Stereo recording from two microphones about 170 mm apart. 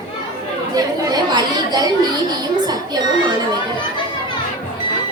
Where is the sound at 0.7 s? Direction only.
25° right (ahead or behind).